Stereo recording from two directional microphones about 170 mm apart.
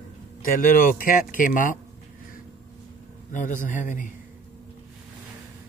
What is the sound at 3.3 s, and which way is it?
Speech, 50° left (ahead or behind).